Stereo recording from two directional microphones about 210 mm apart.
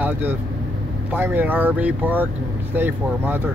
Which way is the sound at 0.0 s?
10° right (ahead or behind).